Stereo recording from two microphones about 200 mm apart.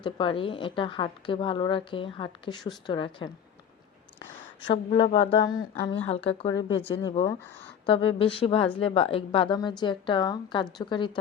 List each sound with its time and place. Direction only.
0.0 s a woman's voice: 25° left (ahead or behind)
4.6 s a woman's voice: 25° left (ahead or behind)